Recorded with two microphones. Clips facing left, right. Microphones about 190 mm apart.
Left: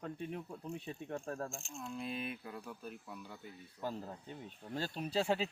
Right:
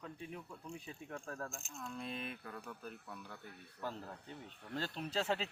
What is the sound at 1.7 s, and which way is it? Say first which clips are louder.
Speech: left 2 dB; 15° left (ahead or behind).